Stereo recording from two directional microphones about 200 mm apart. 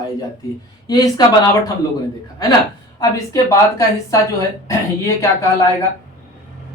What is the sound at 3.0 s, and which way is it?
A man's voice, 15° left (ahead or behind).